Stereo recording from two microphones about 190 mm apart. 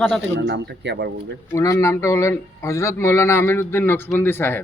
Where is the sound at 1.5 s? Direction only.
15° left (ahead or behind).